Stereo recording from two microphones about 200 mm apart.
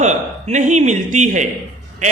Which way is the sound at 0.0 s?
35° right (ahead or behind).